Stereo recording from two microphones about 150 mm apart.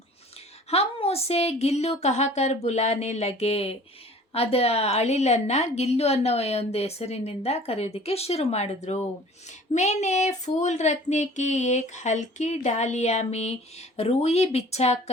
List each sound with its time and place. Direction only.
0.7 s speech: 40° left (ahead or behind)